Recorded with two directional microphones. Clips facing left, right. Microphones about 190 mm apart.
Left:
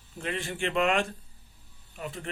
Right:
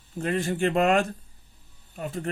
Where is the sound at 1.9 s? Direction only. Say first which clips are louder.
Right 6 dB; 40° right (ahead or behind).